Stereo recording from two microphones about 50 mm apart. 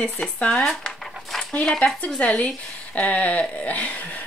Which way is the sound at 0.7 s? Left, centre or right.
Centre.